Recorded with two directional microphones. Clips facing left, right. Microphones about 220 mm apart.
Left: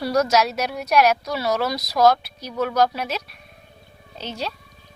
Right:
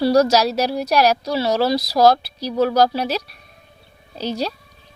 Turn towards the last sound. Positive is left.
turn(degrees=-40)  # may be behind; listen again after turning